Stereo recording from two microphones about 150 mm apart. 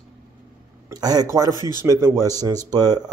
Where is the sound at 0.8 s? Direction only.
25° right (ahead or behind).